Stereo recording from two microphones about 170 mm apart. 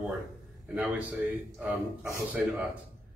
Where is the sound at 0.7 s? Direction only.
5° right (ahead or behind).